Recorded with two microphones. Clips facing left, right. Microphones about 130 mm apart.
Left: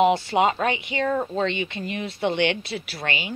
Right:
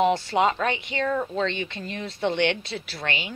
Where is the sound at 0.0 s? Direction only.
10° left (ahead or behind).